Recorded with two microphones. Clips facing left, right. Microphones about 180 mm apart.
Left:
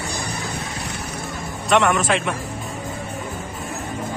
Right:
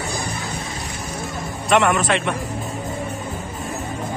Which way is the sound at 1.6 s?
Centre (ahead or behind).